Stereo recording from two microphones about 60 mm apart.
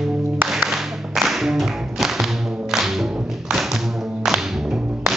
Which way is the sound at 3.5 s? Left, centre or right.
Centre.